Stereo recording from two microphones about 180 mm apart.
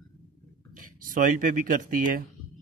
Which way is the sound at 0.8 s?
50° right (ahead or behind).